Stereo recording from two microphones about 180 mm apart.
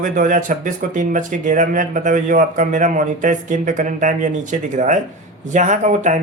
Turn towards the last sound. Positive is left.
turn(degrees=-45)  # may be behind; listen again after turning